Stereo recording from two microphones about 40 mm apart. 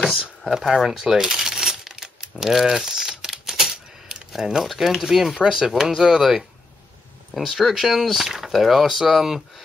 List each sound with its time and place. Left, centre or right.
0.2 s speech: centre
0.8 s coin: centre
2.4 s typewriter: centre
4.6 s speech: centre